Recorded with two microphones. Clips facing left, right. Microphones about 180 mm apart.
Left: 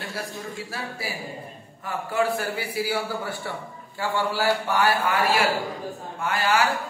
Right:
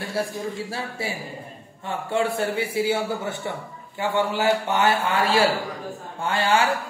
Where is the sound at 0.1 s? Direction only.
30° right (ahead or behind).